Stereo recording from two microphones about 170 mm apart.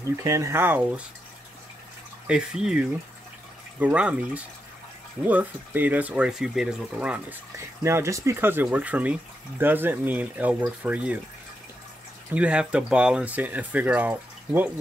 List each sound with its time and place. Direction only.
0.0 s speech: 15° right (ahead or behind)
2.2 s speech: 5° right (ahead or behind)
12.4 s speech: 5° right (ahead or behind)